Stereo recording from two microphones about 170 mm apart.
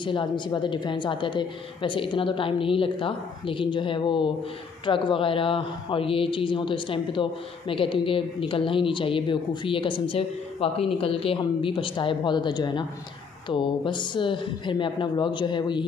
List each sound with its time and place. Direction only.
0.0 s a woman's voice: 25° left (ahead or behind)